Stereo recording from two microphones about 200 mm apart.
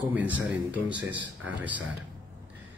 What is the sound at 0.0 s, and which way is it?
Speech, 10° right (ahead or behind).